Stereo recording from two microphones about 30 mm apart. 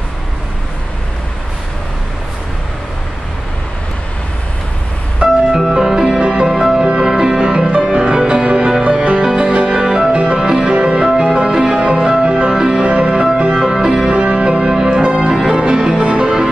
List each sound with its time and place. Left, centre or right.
5.2 s music: centre
7.2 s music: right
9.7 s music: centre
10.1 s music: right
10.4 s music: right
10.7 s music: right
11.1 s music: right
12.8 s music: right
15.5 s music: right